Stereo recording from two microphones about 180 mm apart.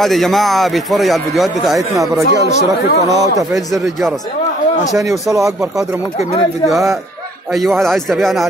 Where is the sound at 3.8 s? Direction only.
Centre (ahead or behind).